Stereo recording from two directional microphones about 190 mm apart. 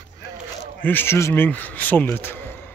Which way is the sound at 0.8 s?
10° left (ahead or behind).